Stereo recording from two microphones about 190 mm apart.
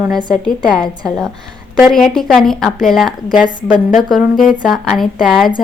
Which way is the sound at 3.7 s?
40° left (ahead or behind).